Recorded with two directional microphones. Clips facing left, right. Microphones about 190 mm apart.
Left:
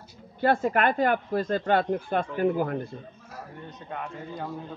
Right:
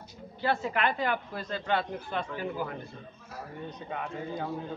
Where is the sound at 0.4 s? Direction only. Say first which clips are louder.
Left 6 dB; 50° left (ahead or behind).